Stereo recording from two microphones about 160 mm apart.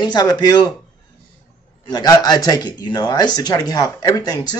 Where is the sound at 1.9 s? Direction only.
25° left (ahead or behind).